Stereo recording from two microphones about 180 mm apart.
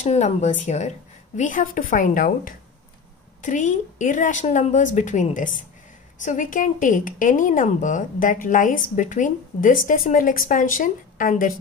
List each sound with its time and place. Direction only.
0.0 s a woman's voice: 40° left (ahead or behind)